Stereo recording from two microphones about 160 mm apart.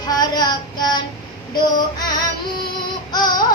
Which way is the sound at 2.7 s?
25° left (ahead or behind).